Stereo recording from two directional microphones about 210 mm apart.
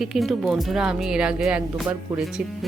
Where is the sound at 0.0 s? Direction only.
Centre (ahead or behind).